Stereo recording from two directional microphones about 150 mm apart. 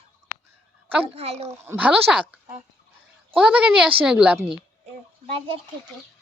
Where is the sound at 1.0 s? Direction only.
40° right (ahead or behind).